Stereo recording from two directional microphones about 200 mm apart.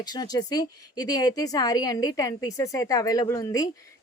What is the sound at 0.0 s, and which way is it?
A woman's voice, 20° left (ahead or behind).